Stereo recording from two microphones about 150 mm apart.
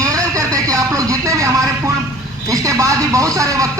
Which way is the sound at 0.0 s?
20° right (ahead or behind).